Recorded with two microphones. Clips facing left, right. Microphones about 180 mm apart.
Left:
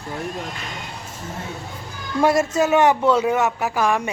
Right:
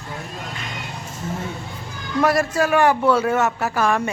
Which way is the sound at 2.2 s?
25° left (ahead or behind).